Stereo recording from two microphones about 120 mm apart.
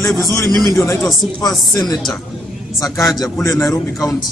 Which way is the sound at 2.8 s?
30° left (ahead or behind).